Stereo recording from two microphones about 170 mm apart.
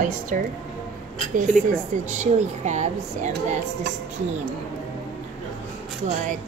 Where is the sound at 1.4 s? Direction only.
45° right (ahead or behind).